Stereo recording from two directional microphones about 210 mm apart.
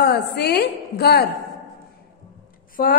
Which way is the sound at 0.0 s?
50° left (ahead or behind).